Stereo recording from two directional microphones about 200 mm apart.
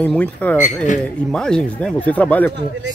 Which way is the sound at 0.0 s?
5° left (ahead or behind).